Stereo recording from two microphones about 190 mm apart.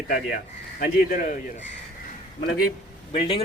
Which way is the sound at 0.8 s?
45° left (ahead or behind).